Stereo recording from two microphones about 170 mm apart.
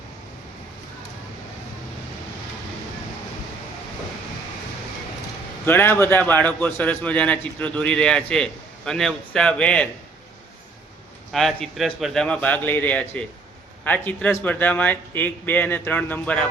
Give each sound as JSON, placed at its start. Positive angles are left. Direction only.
{"t": 5.6, "sound": "a man's voice", "side_deg": 10}
{"t": 11.3, "sound": "a man's voice", "side_deg": 0}